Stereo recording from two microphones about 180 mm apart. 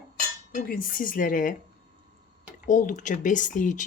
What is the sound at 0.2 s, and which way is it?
Cutlery, 50° left (ahead or behind).